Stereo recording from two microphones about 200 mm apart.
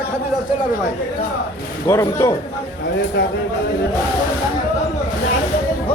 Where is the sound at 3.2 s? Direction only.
65° left (ahead or behind).